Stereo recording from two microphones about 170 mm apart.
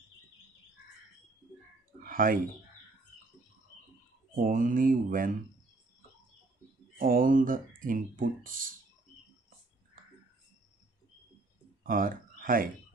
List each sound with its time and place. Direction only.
2.0 s speech: 55° right (ahead or behind)
4.4 s speech: 50° right (ahead or behind)
7.0 s speech: 55° right (ahead or behind)
11.8 s a sound: 55° right (ahead or behind)